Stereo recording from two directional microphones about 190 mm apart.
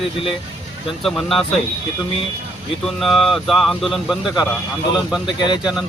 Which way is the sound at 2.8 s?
Centre (ahead or behind).